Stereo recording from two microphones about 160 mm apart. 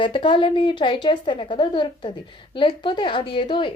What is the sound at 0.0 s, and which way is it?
A woman's voice, 30° left (ahead or behind).